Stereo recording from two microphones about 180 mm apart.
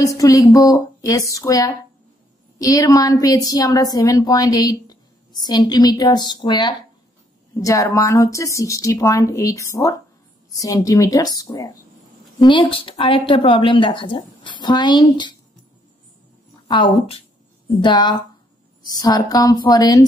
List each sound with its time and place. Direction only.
0.0 s a woman's voice: 20° left (ahead or behind)
16.6 s a woman's voice: 25° left (ahead or behind)